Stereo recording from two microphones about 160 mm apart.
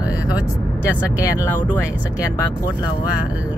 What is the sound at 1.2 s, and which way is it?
Speech, 15° left (ahead or behind).